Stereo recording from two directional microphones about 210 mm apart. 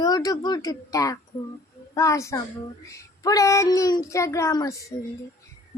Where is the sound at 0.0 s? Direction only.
15° left (ahead or behind).